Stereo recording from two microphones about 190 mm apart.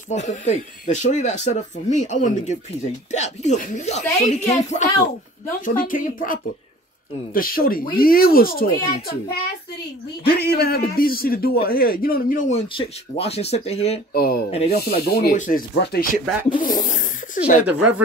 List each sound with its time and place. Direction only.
0.1 s a man's voice: 40° left (ahead or behind)
10.2 s a man's voice: 55° left (ahead or behind); by 13.9 s 35° left (ahead or behind)
14.1 s a man's voice: 50° left (ahead or behind)
16.5 s a sound: 45° left (ahead or behind)
17.6 s speech: 10° right (ahead or behind)